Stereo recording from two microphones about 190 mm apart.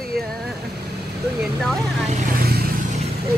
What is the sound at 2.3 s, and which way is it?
Vehicle, 55° right (ahead or behind).